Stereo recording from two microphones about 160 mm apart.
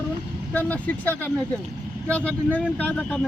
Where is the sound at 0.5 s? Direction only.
10° left (ahead or behind).